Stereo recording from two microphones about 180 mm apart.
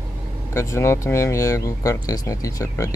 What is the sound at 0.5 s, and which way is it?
Speech, 15° left (ahead or behind).